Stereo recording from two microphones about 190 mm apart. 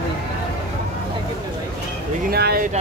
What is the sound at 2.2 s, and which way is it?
Speech, 55° right (ahead or behind).